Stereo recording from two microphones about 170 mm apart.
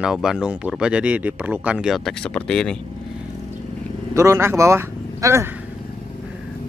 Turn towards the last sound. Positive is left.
turn(degrees=-15)  # may be behind; listen again after turning